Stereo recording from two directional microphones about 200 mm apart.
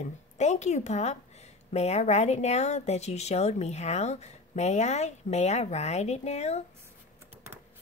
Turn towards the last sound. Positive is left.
turn(degrees=35)  # may be behind; listen again after turning